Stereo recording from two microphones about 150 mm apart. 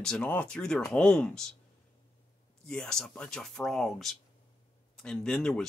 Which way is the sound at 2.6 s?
5° left (ahead or behind).